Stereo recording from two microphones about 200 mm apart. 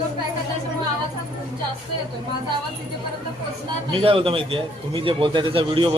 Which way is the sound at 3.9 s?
25° right (ahead or behind).